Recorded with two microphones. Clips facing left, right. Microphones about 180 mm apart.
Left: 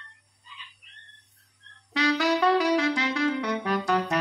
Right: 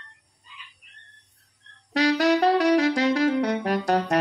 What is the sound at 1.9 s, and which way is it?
Saxophone, 40° right (ahead or behind).